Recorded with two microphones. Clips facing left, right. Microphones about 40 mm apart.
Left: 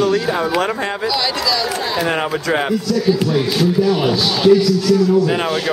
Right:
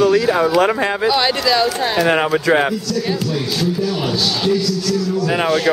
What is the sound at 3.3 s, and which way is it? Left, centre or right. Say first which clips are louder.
Speech: left 4 dB; centre.